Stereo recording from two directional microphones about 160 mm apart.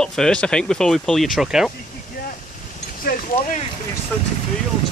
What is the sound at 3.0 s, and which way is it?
Speech, 65° left (ahead or behind).